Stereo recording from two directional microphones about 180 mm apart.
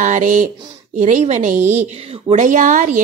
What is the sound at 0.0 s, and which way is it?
A woman's voice, 45° right (ahead or behind).